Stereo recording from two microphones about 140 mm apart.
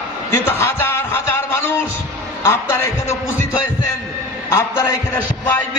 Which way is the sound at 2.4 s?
20° left (ahead or behind).